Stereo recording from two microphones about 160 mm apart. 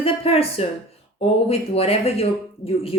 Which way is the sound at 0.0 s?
35° left (ahead or behind).